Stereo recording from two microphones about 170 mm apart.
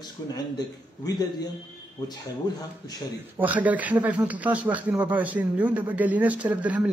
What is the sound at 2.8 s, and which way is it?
Speech, 25° left (ahead or behind).